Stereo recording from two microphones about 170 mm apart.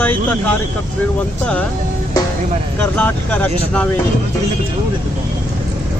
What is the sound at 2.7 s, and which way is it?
Speech, 10° left (ahead or behind).